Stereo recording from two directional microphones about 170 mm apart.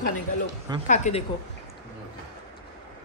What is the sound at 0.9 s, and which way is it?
Speech, 45° left (ahead or behind).